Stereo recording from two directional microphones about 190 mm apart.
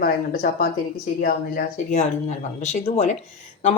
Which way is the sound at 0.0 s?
50° left (ahead or behind).